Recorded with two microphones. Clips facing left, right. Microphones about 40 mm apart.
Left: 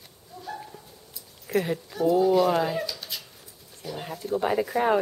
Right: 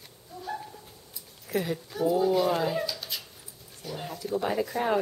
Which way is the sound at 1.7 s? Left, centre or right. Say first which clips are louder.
Left 3 dB; centre.